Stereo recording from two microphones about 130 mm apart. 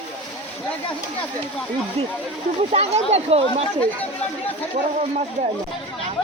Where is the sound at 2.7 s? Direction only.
55° right (ahead or behind).